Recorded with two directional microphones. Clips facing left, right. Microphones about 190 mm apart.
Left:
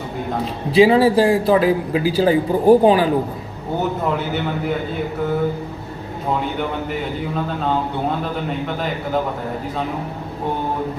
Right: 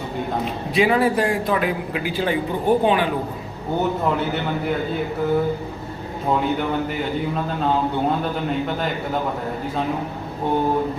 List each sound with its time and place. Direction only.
0.4 s a man's voice: 30° left (ahead or behind)